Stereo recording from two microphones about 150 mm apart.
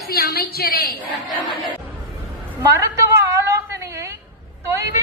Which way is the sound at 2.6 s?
20° right (ahead or behind).